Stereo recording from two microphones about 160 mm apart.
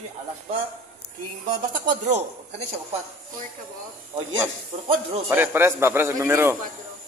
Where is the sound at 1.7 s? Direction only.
55° right (ahead or behind).